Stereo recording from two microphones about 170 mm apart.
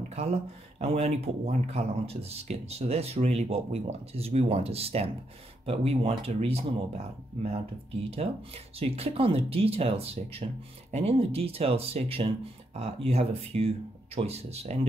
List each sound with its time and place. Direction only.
0.1 s speech: 40° right (ahead or behind)
8.7 s speech: 35° right (ahead or behind)